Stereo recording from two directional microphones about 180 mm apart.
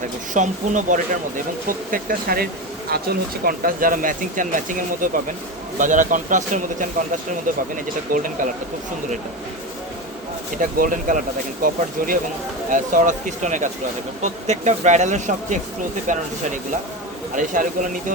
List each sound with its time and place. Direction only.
0.3 s speech: 45° right (ahead or behind)
10.6 s speech: 50° right (ahead or behind)
17.3 s speech: 45° right (ahead or behind)